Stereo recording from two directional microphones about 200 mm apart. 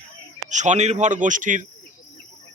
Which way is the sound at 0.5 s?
35° right (ahead or behind).